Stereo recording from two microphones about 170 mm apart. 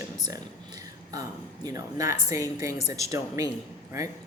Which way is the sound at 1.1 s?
20° right (ahead or behind).